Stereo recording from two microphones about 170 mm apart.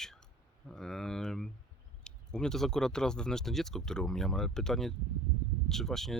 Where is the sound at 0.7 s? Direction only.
5° left (ahead or behind).